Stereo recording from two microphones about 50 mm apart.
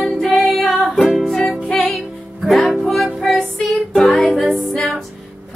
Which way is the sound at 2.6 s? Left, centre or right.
Centre.